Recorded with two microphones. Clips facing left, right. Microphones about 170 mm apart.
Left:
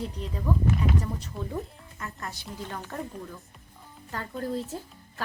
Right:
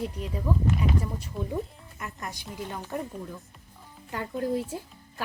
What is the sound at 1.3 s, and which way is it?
Speech, centre (ahead or behind).